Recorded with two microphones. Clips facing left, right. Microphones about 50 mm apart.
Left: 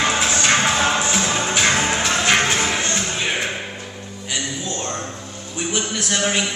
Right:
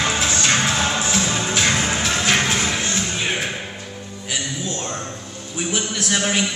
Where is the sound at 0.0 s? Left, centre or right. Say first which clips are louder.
Left 2 dB; centre.